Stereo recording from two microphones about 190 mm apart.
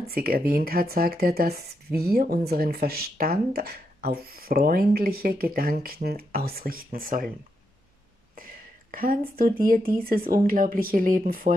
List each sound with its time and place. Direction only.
0.1 s speech: 50° right (ahead or behind)
8.9 s speech: 50° right (ahead or behind)